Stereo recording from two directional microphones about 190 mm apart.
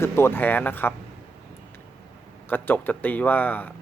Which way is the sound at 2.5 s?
10° left (ahead or behind).